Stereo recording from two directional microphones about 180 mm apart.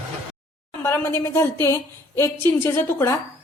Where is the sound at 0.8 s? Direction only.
15° left (ahead or behind).